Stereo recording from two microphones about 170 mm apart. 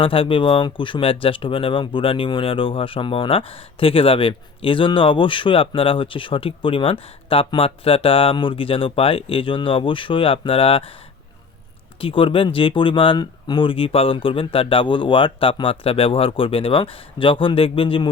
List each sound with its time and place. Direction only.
0.0 s speech: 30° left (ahead or behind)
11.9 s speech: 30° left (ahead or behind)